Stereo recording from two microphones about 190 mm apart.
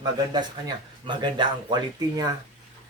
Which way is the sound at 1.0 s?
25° right (ahead or behind).